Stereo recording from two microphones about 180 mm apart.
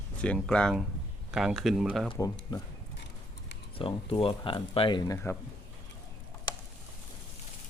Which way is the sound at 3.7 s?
30° left (ahead or behind).